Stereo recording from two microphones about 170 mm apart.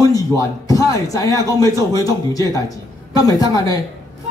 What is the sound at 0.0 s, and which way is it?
A man's voice, 20° left (ahead or behind).